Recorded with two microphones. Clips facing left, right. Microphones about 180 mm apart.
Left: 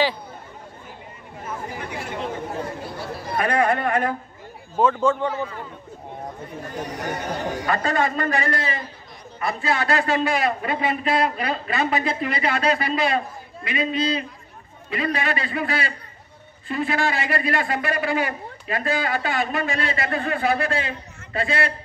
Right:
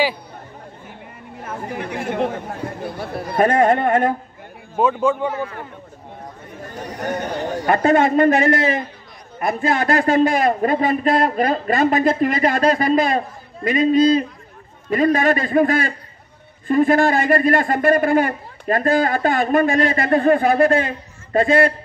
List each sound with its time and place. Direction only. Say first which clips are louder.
2.0 s a sound: right 9 dB; 55° right (ahead or behind)
2.8 s chatter: right 5 dB; 55° right (ahead or behind)
4.7 s a man's voice: right 2 dB; 15° right (ahead or behind)
6.8 s a man's voice: right 4 dB; 10° left (ahead or behind)
7.7 s a man's voice: right 9 dB; 65° right (ahead or behind)